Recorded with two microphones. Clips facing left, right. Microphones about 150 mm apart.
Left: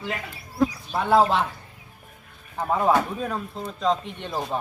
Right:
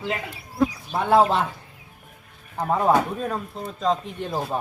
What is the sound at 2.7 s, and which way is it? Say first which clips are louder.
Speech: right 1 dB; centre (ahead or behind).